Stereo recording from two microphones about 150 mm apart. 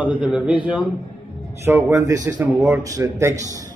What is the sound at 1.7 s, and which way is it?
A man's voice, 15° right (ahead or behind).